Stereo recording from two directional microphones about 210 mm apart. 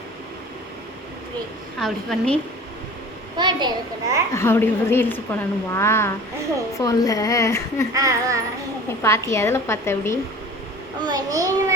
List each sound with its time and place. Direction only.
1.8 s a woman's voice: 5° left (ahead or behind)
3.3 s a woman's voice: 20° right (ahead or behind)
4.4 s a woman's voice: 10° left (ahead or behind)
7.9 s a child's voice: 15° right (ahead or behind)
9.0 s a woman's voice: 15° left (ahead or behind)
11.0 s a child's voice: 20° right (ahead or behind)